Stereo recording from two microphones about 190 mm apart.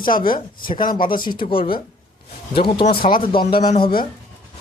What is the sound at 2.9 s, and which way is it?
Speech, 50° left (ahead or behind).